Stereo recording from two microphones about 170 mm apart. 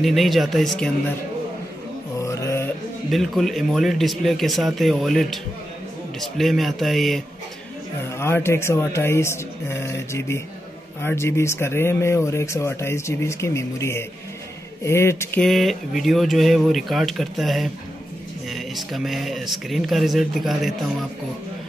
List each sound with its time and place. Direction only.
0.0 s speech: centre (ahead or behind)
2.1 s mantra: 15° left (ahead or behind)
3.1 s speech: centre (ahead or behind)
8.2 s speech: 15° left (ahead or behind)
15.4 s speech: centre (ahead or behind)